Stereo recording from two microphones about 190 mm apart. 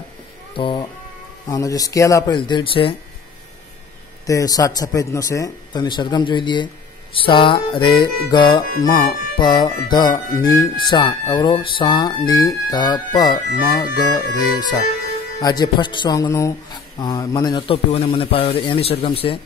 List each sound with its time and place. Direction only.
0.6 s speech: 25° left (ahead or behind)
4.3 s speech: 15° left (ahead or behind)
15.4 s speech: 20° left (ahead or behind)